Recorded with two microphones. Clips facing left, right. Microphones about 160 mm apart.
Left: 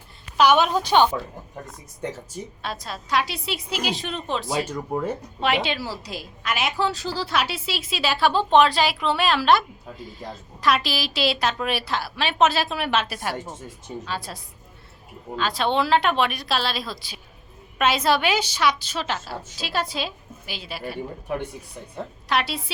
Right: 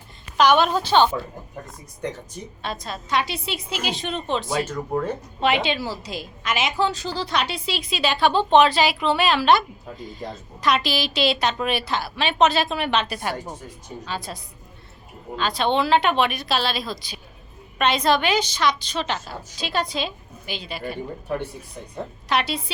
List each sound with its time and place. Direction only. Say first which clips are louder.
0.3 s a woman's voice: even; 10° left (ahead or behind)
1.6 s a woman's voice: right 1 dB; 5° left (ahead or behind)
22.3 s a woman's voice: right 1 dB; centre (ahead or behind)